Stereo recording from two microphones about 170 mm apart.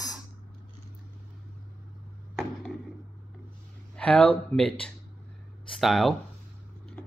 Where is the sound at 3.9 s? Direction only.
5° left (ahead or behind).